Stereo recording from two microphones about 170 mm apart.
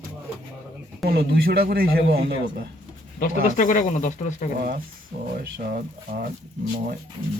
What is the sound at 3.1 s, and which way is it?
Speech, 50° left (ahead or behind).